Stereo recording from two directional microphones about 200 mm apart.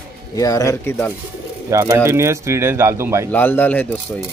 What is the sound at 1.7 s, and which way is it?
Speech, 15° right (ahead or behind).